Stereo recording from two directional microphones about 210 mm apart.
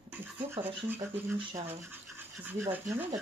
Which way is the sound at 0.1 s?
10° right (ahead or behind).